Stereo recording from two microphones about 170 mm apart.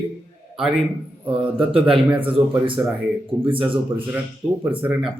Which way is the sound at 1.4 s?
30° right (ahead or behind).